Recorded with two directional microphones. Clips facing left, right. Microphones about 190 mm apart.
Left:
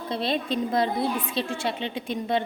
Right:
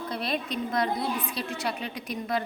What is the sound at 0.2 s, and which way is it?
A woman's voice, 30° left (ahead or behind).